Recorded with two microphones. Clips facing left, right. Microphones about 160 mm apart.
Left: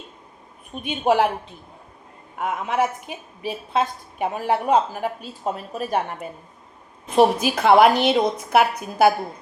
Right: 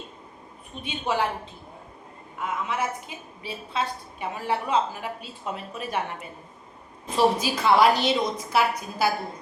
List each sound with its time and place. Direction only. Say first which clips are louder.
0.8 s a woman's voice: left 8 dB; 55° left (ahead or behind)
2.4 s a woman's voice: left 6 dB; 55° left (ahead or behind)
7.2 s a woman's voice: left 5 dB; 55° left (ahead or behind)